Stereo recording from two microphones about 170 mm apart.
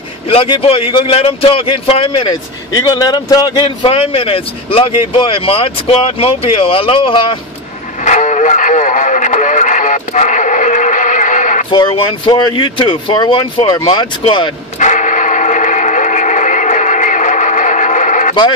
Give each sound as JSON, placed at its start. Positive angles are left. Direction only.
{"t": 0.3, "sound": "a man's voice", "side_deg": 35}
{"t": 8.0, "sound": "speech", "side_deg": 45}
{"t": 11.7, "sound": "speech", "side_deg": 25}
{"t": 14.8, "sound": "a sound", "side_deg": 45}